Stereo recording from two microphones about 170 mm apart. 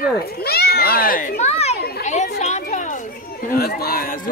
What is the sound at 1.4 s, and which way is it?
Children playing, 40° left (ahead or behind).